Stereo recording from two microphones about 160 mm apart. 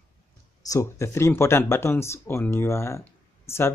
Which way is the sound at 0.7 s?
20° left (ahead or behind).